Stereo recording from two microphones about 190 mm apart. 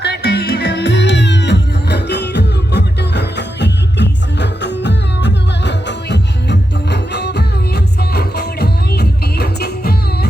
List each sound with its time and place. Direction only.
0.0 s music: 60° left (ahead or behind)